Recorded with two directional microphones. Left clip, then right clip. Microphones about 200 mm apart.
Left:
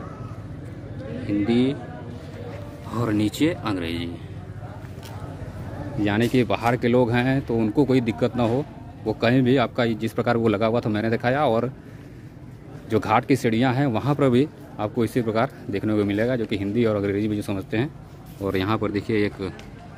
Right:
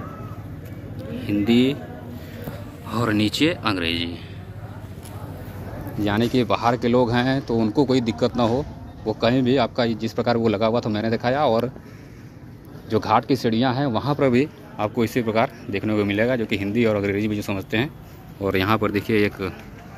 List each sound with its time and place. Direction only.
1.2 s speech: centre (ahead or behind)
2.9 s speech: 5° left (ahead or behind)
6.0 s speech: 15° left (ahead or behind)
9.0 s a man's voice: 25° left (ahead or behind)
12.9 s speech: 20° left (ahead or behind); by 19.5 s 5° left (ahead or behind)